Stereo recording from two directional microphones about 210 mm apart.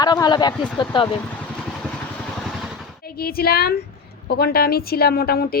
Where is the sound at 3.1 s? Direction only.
45° left (ahead or behind).